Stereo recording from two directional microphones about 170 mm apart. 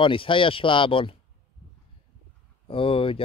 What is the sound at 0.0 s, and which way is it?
Speech, 30° left (ahead or behind).